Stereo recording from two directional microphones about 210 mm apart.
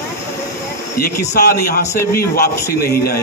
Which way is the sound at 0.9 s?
45° left (ahead or behind).